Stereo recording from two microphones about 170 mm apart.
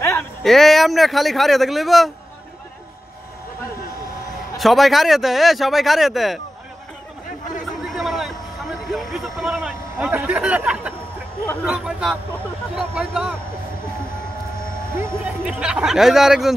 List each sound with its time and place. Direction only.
0.0 s a sound: 15° left (ahead or behind)
0.4 s speech: centre (ahead or behind)
4.6 s speech: centre (ahead or behind)
7.6 s a sound: centre (ahead or behind)
11.6 s speech: 5° right (ahead or behind)
15.0 s speech: 10° right (ahead or behind)